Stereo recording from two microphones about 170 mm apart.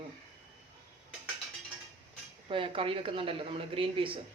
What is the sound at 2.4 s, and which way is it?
Speech, 30° right (ahead or behind).